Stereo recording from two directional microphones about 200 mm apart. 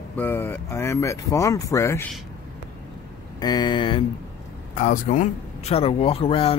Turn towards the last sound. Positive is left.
turn(degrees=30)  # may be behind; listen again after turning